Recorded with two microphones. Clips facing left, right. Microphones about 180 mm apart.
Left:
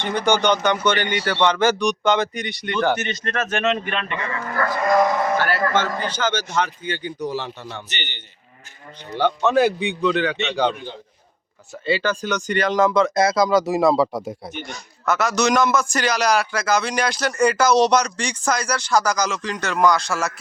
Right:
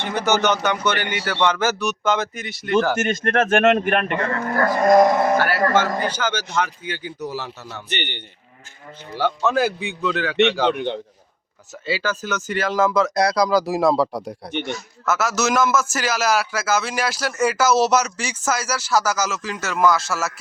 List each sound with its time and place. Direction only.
0.0 s a man's voice: 5° right (ahead or behind)
3.0 s speech: 50° right (ahead or behind)
5.4 s speech: 10° right (ahead or behind)
7.9 s a man's voice: 55° right (ahead or behind)
9.0 s a man's voice: 5° right (ahead or behind)
10.7 s a man's voice: 70° right (ahead or behind)
11.9 s a man's voice: 5° right (ahead or behind)